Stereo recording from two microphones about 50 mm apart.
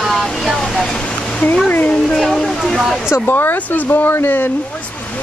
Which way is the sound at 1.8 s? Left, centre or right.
Left.